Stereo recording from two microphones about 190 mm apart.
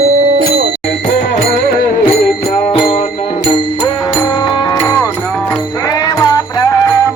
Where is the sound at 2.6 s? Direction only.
30° left (ahead or behind).